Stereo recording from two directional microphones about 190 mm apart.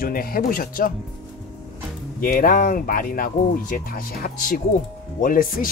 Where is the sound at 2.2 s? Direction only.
45° left (ahead or behind).